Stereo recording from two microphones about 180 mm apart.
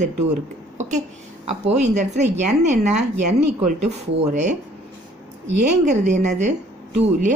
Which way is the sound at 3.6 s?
35° right (ahead or behind).